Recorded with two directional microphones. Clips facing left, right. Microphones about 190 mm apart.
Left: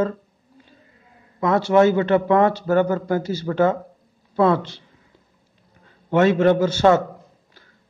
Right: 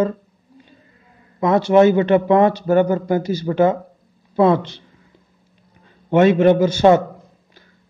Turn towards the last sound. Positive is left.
turn(degrees=-15)  # may be behind; listen again after turning